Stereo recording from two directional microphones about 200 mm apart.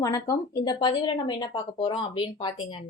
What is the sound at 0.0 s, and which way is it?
Speech, 15° left (ahead or behind).